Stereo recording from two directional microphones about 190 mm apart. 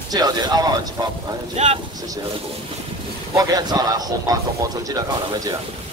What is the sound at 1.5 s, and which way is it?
Speech, 35° right (ahead or behind).